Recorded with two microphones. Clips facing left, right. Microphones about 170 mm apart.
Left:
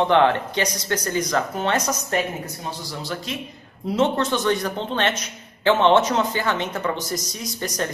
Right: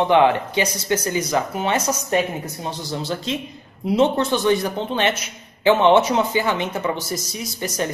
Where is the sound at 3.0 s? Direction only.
25° right (ahead or behind).